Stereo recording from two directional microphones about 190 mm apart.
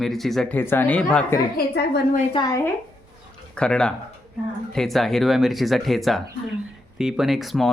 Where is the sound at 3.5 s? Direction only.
5° left (ahead or behind).